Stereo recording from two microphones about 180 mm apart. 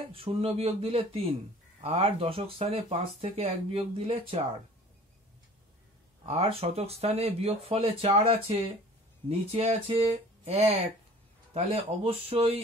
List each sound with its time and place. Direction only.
0.1 s speech: 30° right (ahead or behind)
6.2 s speech: 35° right (ahead or behind)